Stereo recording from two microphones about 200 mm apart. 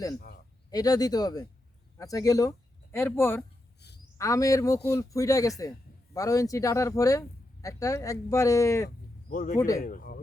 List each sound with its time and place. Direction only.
0.2 s speech: 50° left (ahead or behind)
0.7 s speech: 20° left (ahead or behind)
3.8 s a sound: 55° left (ahead or behind)
4.2 s speech: 15° left (ahead or behind)
9.3 s speech: 45° left (ahead or behind)
9.6 s speech: 15° left (ahead or behind)
9.8 s speech: 45° left (ahead or behind)